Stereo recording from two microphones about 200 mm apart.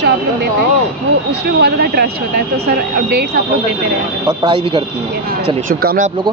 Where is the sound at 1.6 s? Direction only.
50° right (ahead or behind).